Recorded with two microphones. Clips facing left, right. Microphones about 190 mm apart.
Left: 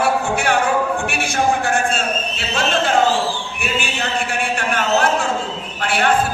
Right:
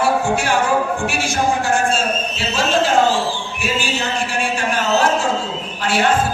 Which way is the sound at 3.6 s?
60° left (ahead or behind).